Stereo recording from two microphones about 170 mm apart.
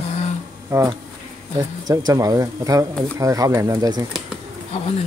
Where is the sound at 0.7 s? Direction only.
20° right (ahead or behind).